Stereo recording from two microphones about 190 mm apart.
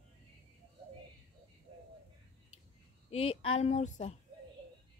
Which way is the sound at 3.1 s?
30° left (ahead or behind).